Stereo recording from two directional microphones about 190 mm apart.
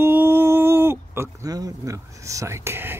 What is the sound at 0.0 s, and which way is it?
Speech, 10° right (ahead or behind).